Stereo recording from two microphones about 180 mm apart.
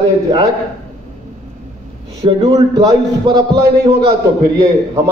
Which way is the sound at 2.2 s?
35° right (ahead or behind).